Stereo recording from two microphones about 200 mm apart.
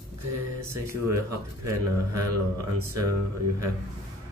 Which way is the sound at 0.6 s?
15° right (ahead or behind).